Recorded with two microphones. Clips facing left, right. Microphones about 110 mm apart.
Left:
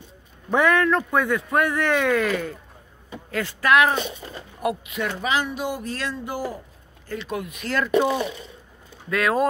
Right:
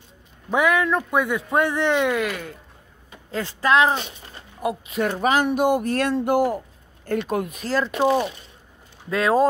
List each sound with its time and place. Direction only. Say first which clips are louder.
0.5 s a man's voice: left 1 dB; 10° right (ahead or behind)
3.3 s speech: even; 30° right (ahead or behind); by 6.6 s 60° right (ahead or behind)
7.1 s speech: right 6 dB; 50° right (ahead or behind); by 9.5 s 30° right (ahead or behind)